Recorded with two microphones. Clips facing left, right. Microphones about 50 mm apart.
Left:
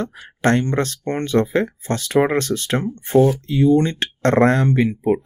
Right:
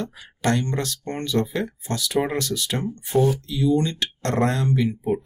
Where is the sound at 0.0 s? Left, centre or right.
Left.